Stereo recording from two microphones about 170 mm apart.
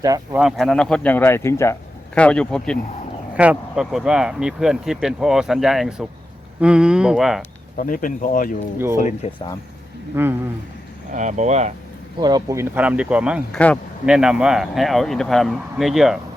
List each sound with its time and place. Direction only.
0.3 s speech: 5° right (ahead or behind)
3.3 s speech: 5° right (ahead or behind)
7.8 s speech: 55° left (ahead or behind)
10.1 s speech: 10° right (ahead or behind)
11.1 s speech: 45° right (ahead or behind)
12.2 s speech: 20° right (ahead or behind)
13.5 s speech: 10° left (ahead or behind)
14.0 s speech: 5° right (ahead or behind)